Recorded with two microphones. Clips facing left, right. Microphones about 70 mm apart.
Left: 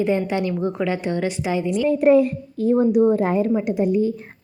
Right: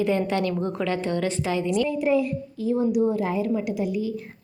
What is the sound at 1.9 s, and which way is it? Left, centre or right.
A child's voice, left.